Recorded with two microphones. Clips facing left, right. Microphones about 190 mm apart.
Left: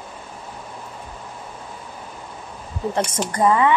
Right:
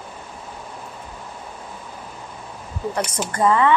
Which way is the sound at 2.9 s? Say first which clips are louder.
Left 2 dB; 25° left (ahead or behind).